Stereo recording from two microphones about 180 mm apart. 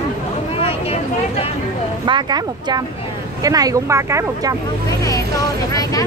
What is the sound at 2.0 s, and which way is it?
Speech, 25° right (ahead or behind).